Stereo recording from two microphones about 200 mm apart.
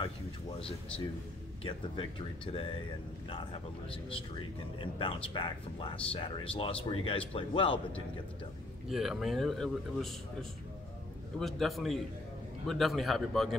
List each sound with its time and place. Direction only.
1.6 s speech: 25° left (ahead or behind)
8.8 s speech: centre (ahead or behind)
11.3 s speech: centre (ahead or behind)